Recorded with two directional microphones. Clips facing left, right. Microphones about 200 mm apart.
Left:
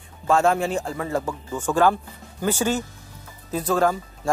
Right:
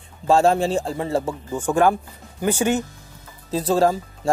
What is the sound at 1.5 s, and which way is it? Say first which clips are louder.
Speech: right 1 dB; 15° right (ahead or behind).